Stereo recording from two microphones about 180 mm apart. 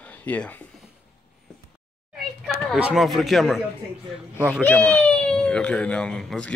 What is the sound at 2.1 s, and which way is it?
Speech, centre (ahead or behind).